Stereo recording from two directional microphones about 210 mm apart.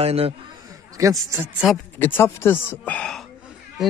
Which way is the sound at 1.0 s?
15° right (ahead or behind).